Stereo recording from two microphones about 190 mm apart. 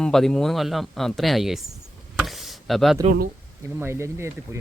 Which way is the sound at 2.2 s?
Centre (ahead or behind).